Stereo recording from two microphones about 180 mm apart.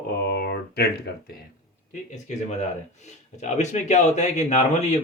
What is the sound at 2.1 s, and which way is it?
Speech, 40° left (ahead or behind).